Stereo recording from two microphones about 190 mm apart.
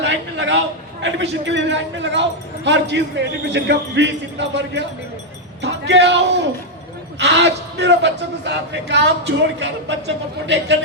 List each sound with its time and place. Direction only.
0.0 s a man's voice: 65° right (ahead or behind)